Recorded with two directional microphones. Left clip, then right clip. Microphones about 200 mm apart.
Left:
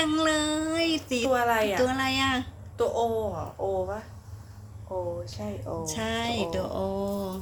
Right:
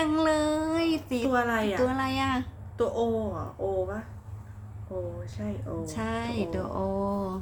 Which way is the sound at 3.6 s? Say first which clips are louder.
Left 1 dB; 25° left (ahead or behind).